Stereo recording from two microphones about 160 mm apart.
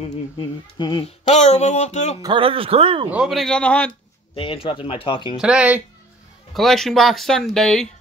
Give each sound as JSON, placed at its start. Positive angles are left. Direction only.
{"t": 0.4, "sound": "speech", "side_deg": 30}
{"t": 1.0, "sound": "speech", "side_deg": 40}
{"t": 2.2, "sound": "speech", "side_deg": -35}
{"t": 3.1, "sound": "speech", "side_deg": -5}
{"t": 4.4, "sound": "speech", "side_deg": 35}
{"t": 5.4, "sound": "speech", "side_deg": -5}